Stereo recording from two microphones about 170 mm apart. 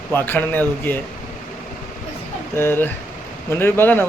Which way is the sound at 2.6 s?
15° left (ahead or behind).